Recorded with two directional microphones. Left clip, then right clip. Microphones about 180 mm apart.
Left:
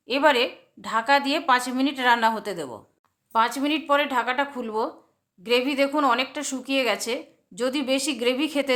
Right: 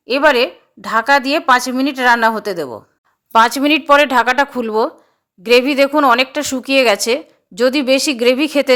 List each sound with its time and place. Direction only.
0.1 s a woman's voice: 30° right (ahead or behind)